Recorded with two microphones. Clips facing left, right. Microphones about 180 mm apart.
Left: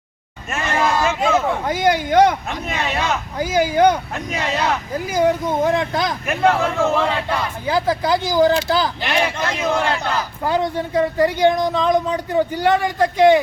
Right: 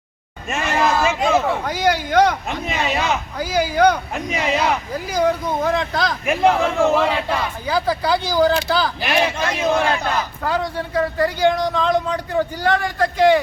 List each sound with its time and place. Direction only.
0.6 s a sound: centre (ahead or behind)
1.6 s speech: 20° left (ahead or behind)
2.5 s a man's voice: 15° right (ahead or behind)
5.1 s speech: 20° left (ahead or behind)
6.2 s a man's voice: 10° right (ahead or behind)
7.7 s speech: 20° left (ahead or behind)
9.0 s a man's voice: 10° right (ahead or behind)
10.4 s speech: 20° left (ahead or behind)